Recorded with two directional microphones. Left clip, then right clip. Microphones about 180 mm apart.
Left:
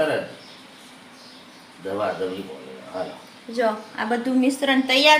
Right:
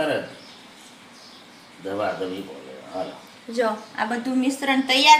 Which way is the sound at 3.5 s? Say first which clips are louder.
Left 1 dB; 15° right (ahead or behind).